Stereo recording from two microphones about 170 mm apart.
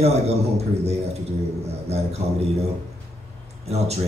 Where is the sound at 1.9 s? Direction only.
40° right (ahead or behind).